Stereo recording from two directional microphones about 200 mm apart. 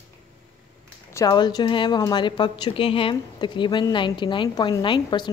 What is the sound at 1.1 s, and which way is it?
A woman's voice, 15° left (ahead or behind).